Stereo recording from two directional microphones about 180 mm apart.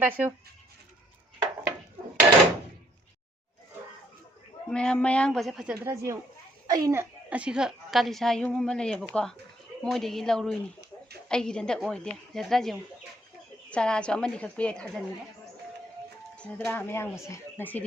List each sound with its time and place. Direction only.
0.0 s speech: 10° right (ahead or behind)
4.7 s a woman's voice: 5° left (ahead or behind)
5.7 s a woman's voice: 15° right (ahead or behind); by 15.0 s 5° left (ahead or behind)
16.3 s speech: 5° left (ahead or behind)